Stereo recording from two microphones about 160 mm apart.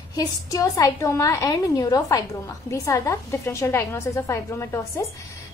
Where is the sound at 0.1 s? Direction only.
25° left (ahead or behind).